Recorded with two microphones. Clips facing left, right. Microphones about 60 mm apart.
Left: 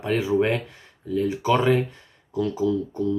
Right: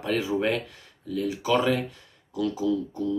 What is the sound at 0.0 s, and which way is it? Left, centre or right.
Speech, left.